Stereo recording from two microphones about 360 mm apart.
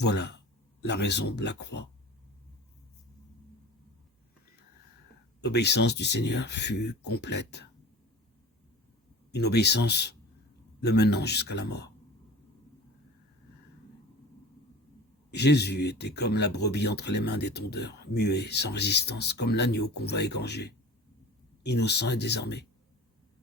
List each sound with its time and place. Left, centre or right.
0.0 s speech: left
5.4 s speech: left
9.3 s speech: left
15.3 s speech: left